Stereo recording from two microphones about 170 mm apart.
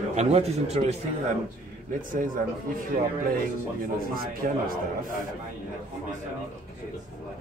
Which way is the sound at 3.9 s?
60° right (ahead or behind).